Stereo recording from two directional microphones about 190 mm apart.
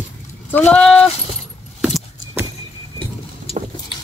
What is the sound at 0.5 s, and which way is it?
Speech, 5° left (ahead or behind).